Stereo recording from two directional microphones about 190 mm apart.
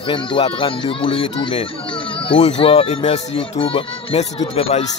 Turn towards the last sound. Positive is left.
turn(degrees=30)  # may be behind; listen again after turning